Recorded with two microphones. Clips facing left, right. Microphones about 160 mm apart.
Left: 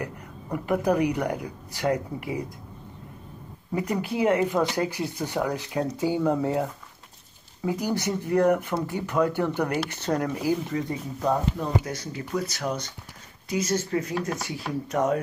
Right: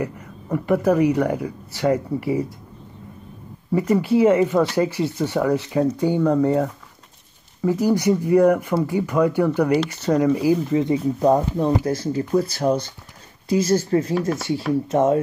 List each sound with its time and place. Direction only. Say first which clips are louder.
0.0 s speech: right 7 dB; centre (ahead or behind)
3.7 s speech: right 9 dB; centre (ahead or behind)
7.8 s speech: right 12 dB; 10° right (ahead or behind)
10.7 s speech: right 10 dB; 25° right (ahead or behind)